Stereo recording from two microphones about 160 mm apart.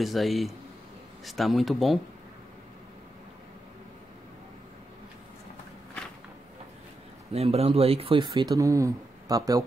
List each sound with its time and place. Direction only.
0.0 s speech: centre (ahead or behind)
7.3 s speech: 40° right (ahead or behind)
8.5 s speech: 20° right (ahead or behind)